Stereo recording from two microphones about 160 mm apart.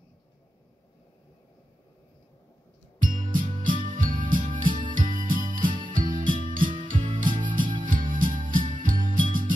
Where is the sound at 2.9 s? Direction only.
55° right (ahead or behind).